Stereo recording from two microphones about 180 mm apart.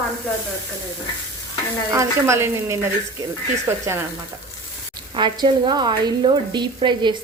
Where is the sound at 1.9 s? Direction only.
15° right (ahead or behind).